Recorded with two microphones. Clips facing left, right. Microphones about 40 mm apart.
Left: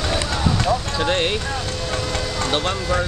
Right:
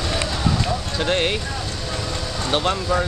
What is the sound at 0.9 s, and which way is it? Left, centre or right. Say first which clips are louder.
Clip-clop: left 1 dB; centre.